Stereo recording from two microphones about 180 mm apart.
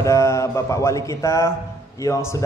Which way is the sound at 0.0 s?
15° left (ahead or behind).